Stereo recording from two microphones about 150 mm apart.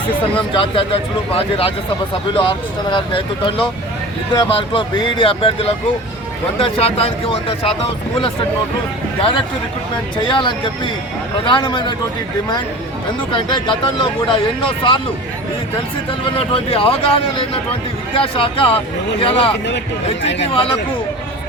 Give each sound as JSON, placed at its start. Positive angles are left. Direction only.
{"t": 0.3, "sound": "speech", "side_deg": 35}
{"t": 10.2, "sound": "speech", "side_deg": 30}
{"t": 13.3, "sound": "speech", "side_deg": 35}
{"t": 16.4, "sound": "speech", "side_deg": 40}